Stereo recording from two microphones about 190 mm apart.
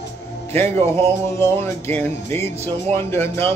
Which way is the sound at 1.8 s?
15° left (ahead or behind).